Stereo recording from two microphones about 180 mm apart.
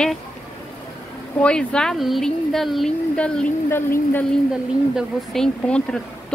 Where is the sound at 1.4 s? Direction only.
5° left (ahead or behind).